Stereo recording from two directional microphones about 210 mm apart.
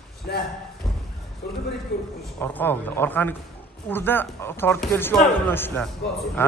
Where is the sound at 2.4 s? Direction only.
10° left (ahead or behind).